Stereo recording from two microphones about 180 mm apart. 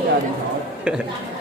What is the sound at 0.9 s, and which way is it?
Speech, 5° right (ahead or behind).